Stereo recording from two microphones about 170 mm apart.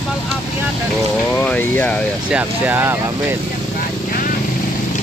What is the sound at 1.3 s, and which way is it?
Speech, 10° left (ahead or behind).